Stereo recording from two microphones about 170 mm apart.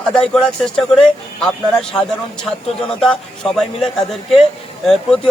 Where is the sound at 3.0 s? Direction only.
Centre (ahead or behind).